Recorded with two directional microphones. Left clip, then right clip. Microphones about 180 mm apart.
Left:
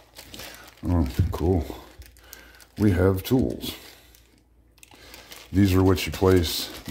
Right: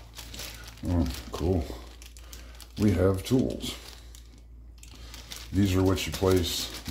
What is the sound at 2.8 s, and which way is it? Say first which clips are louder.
Speech: left 3 dB; 45° left (ahead or behind).